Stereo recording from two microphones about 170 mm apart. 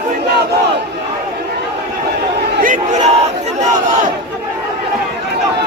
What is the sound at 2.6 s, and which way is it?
Crowd, 45° right (ahead or behind).